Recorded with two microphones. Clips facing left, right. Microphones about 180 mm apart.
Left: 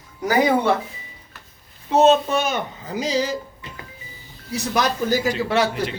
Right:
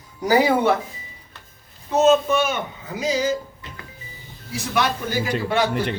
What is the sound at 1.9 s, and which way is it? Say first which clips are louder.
Speech: left 1 dB; 30° left (ahead or behind).